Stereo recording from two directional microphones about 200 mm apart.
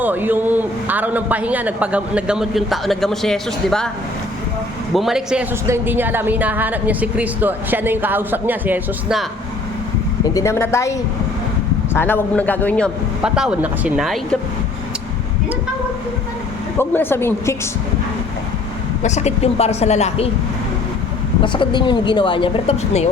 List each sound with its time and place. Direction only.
0.0 s a woman's voice: 10° right (ahead or behind)
4.9 s a woman's voice: centre (ahead or behind)
10.3 s a woman's voice: 15° left (ahead or behind)
11.9 s a man's voice: 10° left (ahead or behind)
16.7 s a woman's voice: 10° left (ahead or behind)
19.0 s speech: 35° left (ahead or behind)
21.4 s speech: 25° left (ahead or behind)